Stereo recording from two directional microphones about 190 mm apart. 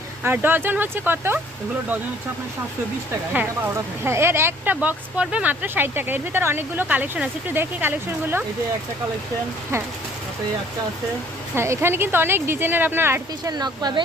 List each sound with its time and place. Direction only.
0.2 s speech: 10° right (ahead or behind)
4.0 s speech: 10° right (ahead or behind)
11.5 s speech: 15° right (ahead or behind)